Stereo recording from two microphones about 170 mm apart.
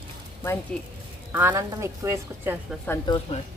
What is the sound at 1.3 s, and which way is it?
Speech, 15° right (ahead or behind).